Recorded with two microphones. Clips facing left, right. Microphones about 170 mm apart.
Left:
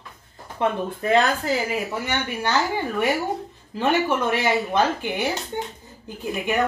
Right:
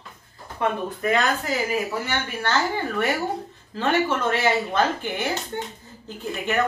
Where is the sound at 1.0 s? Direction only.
30° left (ahead or behind).